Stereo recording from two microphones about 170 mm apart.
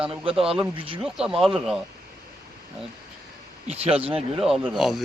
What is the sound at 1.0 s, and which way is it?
Speech, 5° right (ahead or behind).